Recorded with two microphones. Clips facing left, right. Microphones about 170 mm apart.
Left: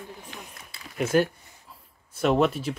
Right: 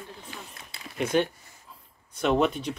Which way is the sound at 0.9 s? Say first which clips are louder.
Left 2 dB; 5° left (ahead or behind).